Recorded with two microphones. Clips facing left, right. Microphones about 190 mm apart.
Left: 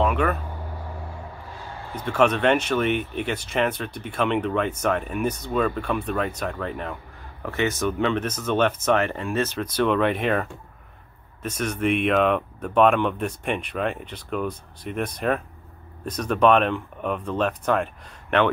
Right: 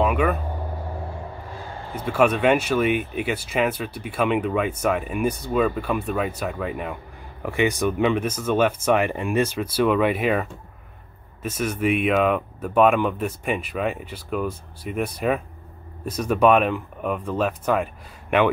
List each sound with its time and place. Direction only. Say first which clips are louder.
0.0 s vehicle: right 1 dB; 5° right (ahead or behind)
2.0 s speech: right 1 dB; 10° right (ahead or behind)